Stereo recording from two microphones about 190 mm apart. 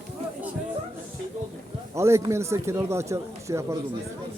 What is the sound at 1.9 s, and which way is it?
A man's voice, 15° right (ahead or behind).